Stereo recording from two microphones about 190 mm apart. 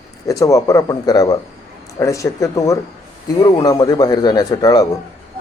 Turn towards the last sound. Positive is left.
turn(degrees=20)  # may be behind; listen again after turning